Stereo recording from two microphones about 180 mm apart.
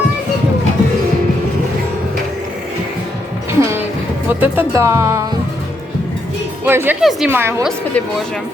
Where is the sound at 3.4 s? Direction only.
15° right (ahead or behind).